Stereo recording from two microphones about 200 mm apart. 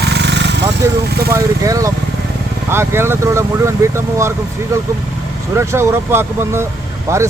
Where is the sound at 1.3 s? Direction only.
15° right (ahead or behind).